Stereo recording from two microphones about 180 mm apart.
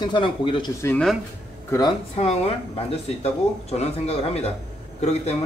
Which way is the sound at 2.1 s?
35° left (ahead or behind).